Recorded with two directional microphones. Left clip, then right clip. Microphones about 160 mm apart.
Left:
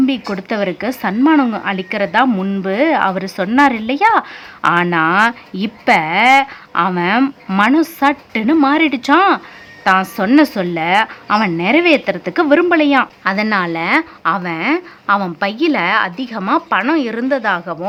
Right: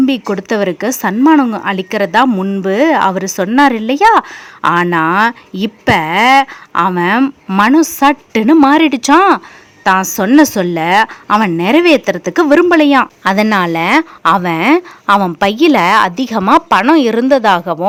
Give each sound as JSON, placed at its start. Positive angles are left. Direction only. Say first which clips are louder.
{"t": 0.0, "sound": "a woman's voice", "louder": "right 4 dB", "side_deg": -30}